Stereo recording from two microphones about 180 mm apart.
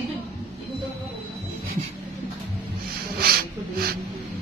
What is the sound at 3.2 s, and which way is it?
Snort, 60° right (ahead or behind).